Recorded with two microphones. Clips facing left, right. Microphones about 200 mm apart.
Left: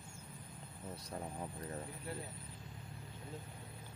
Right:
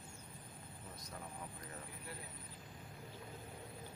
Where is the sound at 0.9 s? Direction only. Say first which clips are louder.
Left 7 dB; 35° left (ahead or behind).